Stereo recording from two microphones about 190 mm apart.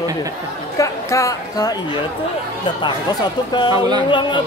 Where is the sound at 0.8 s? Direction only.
15° left (ahead or behind).